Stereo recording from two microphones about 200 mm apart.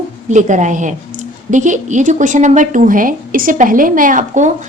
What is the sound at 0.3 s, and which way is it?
A woman's voice, 35° right (ahead or behind).